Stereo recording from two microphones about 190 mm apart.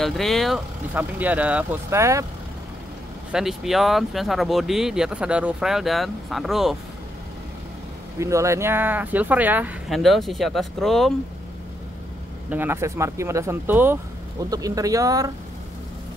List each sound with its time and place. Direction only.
0.0 s speech: centre (ahead or behind); by 2.2 s 15° right (ahead or behind)
3.3 s speech: 5° right (ahead or behind)
8.2 s speech: 15° right (ahead or behind); by 11.1 s centre (ahead or behind)
12.4 s speech: 10° right (ahead or behind)